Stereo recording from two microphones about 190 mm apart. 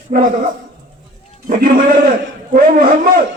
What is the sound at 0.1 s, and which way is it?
Speech, 45° right (ahead or behind).